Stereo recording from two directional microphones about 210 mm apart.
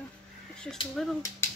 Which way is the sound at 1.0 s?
Centre (ahead or behind).